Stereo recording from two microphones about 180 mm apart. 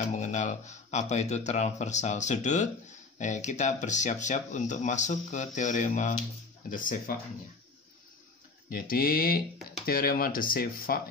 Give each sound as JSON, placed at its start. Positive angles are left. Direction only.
{"t": 0.1, "sound": "speech", "side_deg": 40}
{"t": 8.6, "sound": "speech", "side_deg": 50}